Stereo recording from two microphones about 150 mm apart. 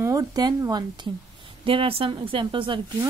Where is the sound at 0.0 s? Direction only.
25° right (ahead or behind).